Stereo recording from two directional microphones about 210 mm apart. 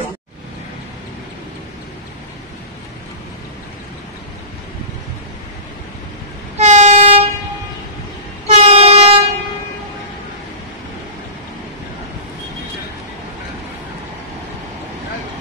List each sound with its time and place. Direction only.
6.5 s train: 30° right (ahead or behind)
8.5 s train: 30° right (ahead or behind)